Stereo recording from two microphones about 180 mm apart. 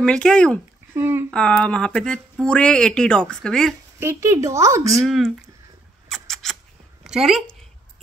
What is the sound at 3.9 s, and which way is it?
A woman's voice, 15° right (ahead or behind).